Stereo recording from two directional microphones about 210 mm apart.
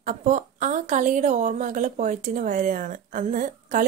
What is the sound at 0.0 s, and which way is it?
A woman's voice, 35° right (ahead or behind).